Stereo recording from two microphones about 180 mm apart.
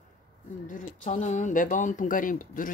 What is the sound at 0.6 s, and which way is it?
Speech, 45° left (ahead or behind).